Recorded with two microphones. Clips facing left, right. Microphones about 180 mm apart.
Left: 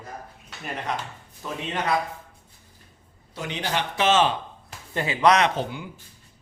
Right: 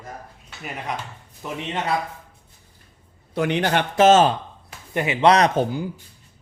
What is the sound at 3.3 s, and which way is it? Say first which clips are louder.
Speech: right 8 dB; 60° right (ahead or behind).